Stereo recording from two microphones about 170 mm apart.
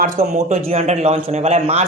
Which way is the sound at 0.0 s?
45° right (ahead or behind).